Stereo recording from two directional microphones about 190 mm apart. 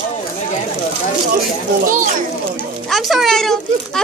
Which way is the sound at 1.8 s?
45° right (ahead or behind).